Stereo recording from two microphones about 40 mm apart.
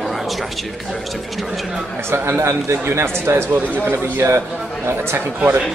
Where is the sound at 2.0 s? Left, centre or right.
Right.